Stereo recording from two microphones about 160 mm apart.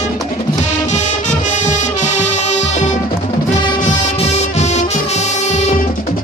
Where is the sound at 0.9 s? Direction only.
50° left (ahead or behind).